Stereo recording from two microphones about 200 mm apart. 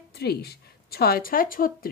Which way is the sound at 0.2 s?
50° left (ahead or behind).